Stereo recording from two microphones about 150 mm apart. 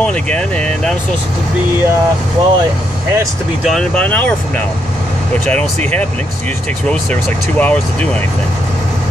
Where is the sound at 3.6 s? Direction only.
5° left (ahead or behind).